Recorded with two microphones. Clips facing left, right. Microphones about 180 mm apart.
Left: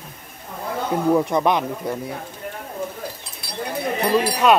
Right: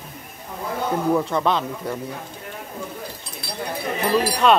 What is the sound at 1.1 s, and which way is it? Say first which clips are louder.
Speech: left 4 dB; 15° left (ahead or behind).